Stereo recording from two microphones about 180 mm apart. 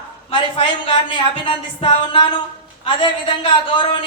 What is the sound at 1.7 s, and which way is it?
Speech, 30° left (ahead or behind).